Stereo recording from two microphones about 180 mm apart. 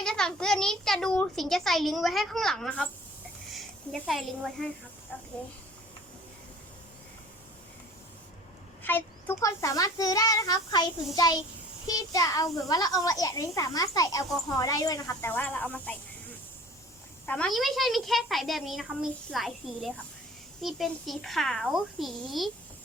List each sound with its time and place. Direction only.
0.0 s a child's voice: 5° left (ahead or behind)
4.0 s a child's voice: centre (ahead or behind)
8.8 s a child's voice: 10° left (ahead or behind)
17.2 s a child's voice: 5° left (ahead or behind)